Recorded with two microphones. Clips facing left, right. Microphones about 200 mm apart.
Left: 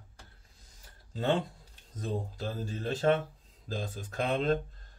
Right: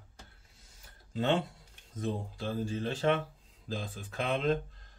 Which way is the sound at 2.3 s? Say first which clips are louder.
Right 3 dB; 40° left (ahead or behind).